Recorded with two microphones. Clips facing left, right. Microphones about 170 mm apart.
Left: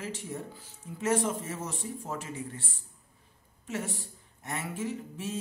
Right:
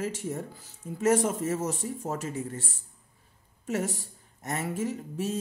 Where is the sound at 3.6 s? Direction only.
40° right (ahead or behind).